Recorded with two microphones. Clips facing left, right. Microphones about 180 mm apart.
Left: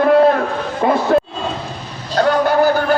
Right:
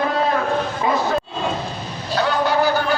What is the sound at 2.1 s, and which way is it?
Vehicle, 50° left (ahead or behind).